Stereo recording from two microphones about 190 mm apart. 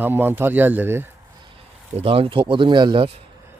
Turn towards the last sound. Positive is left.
turn(degrees=-25)  # may be behind; listen again after turning